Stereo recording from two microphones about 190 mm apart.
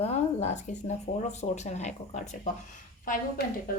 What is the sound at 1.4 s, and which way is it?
A woman's voice, 35° left (ahead or behind).